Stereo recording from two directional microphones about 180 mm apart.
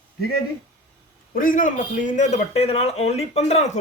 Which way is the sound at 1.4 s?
50° left (ahead or behind).